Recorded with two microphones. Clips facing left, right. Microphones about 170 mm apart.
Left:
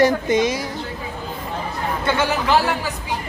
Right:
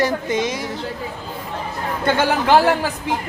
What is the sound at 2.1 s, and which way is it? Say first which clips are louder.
Speech: right 4 dB; 55° right (ahead or behind).